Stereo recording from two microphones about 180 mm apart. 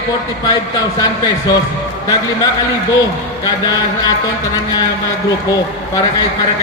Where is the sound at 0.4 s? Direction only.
20° left (ahead or behind).